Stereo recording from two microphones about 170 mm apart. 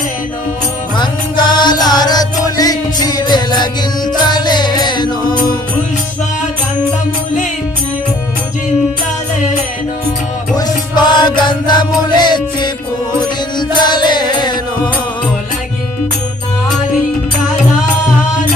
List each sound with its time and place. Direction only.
0.9 s music: 25° left (ahead or behind)
10.5 s music: 25° left (ahead or behind)